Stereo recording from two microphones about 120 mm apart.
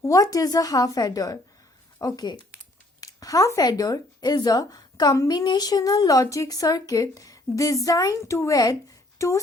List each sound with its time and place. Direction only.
0.0 s a woman's voice: 30° left (ahead or behind)